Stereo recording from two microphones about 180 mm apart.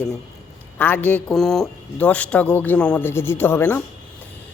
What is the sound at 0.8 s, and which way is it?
Speech, 10° left (ahead or behind).